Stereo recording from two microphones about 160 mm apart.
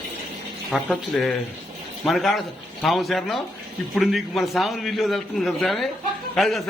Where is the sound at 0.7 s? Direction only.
Centre (ahead or behind).